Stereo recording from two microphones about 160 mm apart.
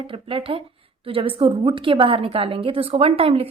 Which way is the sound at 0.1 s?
35° right (ahead or behind).